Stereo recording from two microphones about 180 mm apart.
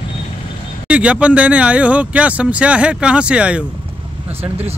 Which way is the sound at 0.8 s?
5° right (ahead or behind).